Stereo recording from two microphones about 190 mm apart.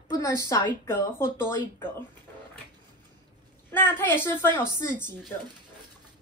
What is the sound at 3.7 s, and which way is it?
A woman's voice, 10° left (ahead or behind).